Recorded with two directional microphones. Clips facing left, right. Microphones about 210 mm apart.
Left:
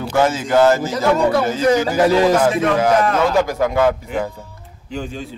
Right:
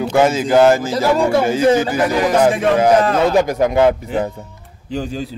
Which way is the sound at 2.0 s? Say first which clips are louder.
Left 3 dB; 25° left (ahead or behind).